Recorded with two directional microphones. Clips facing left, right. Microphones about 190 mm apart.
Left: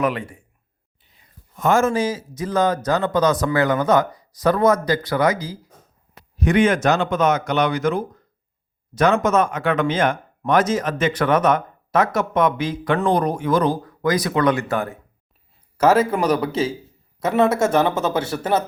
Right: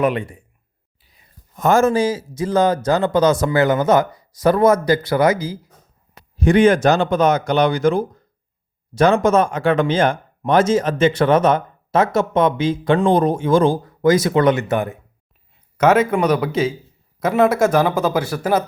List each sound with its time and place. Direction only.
0.0 s speech: 25° right (ahead or behind)
1.5 s speech: 40° right (ahead or behind); by 14.9 s 20° right (ahead or behind)
15.8 s speech: 30° left (ahead or behind)